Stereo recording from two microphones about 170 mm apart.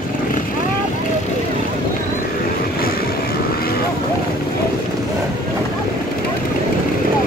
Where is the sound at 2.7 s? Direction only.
60° left (ahead or behind).